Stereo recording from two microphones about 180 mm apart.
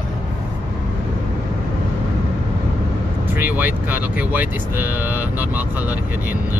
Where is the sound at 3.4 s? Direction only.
10° right (ahead or behind).